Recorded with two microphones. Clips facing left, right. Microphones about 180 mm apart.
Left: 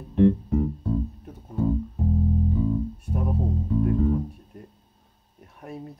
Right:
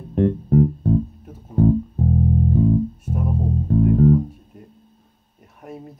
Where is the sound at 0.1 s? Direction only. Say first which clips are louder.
Right 2 dB; 45° right (ahead or behind).